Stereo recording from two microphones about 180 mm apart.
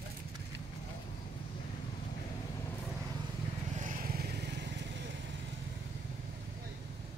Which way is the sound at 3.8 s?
50° right (ahead or behind).